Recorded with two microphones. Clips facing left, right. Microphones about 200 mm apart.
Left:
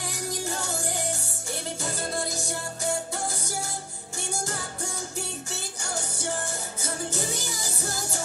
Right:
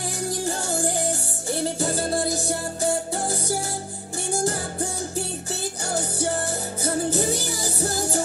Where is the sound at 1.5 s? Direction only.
35° right (ahead or behind).